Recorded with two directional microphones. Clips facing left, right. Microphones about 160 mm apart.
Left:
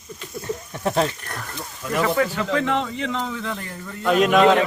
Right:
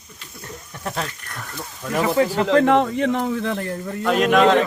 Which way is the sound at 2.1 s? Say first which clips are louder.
Right 3 dB; 35° right (ahead or behind).